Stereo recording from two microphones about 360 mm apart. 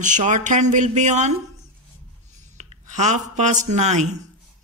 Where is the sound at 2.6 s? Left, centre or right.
Centre.